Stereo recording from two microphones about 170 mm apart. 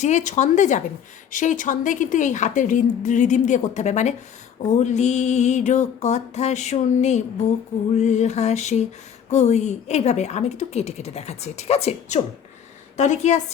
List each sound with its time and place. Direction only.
0.0 s a woman's voice: 45° left (ahead or behind)